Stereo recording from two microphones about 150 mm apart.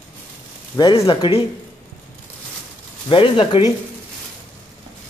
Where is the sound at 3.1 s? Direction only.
35° left (ahead or behind).